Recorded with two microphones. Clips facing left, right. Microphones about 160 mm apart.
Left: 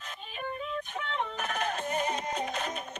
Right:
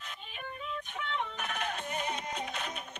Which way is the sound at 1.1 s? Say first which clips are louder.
Left 3 dB; 40° left (ahead or behind).